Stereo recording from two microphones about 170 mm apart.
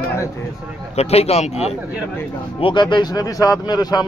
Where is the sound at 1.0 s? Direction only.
35° left (ahead or behind).